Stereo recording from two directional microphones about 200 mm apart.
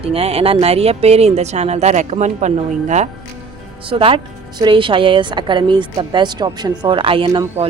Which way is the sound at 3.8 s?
25° right (ahead or behind).